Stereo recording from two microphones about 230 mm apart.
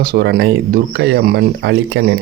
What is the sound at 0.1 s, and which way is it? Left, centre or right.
Speech, right.